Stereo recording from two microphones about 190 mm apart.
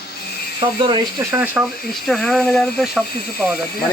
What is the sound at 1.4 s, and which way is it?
Speech, 5° right (ahead or behind).